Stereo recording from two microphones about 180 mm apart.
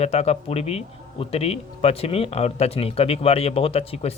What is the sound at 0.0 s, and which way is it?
Speech, 35° left (ahead or behind).